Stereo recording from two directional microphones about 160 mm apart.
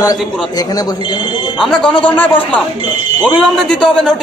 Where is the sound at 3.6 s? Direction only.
5° left (ahead or behind).